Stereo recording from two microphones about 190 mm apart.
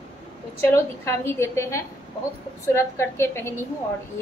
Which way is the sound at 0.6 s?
15° left (ahead or behind).